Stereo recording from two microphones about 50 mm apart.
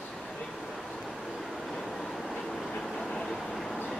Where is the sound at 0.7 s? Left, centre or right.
Centre.